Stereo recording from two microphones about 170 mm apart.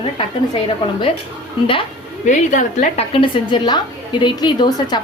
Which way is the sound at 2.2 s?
45° left (ahead or behind).